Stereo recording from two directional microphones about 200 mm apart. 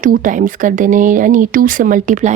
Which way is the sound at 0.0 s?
40° right (ahead or behind).